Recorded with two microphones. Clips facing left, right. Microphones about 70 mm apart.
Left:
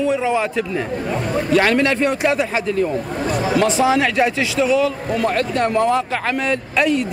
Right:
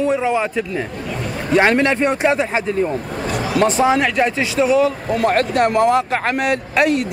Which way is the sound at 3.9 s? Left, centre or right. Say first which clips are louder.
Even; centre.